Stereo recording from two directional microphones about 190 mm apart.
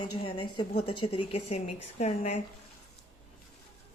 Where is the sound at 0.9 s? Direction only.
30° left (ahead or behind).